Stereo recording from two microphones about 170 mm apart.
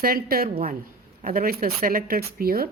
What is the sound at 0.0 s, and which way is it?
A woman's voice, 60° right (ahead or behind).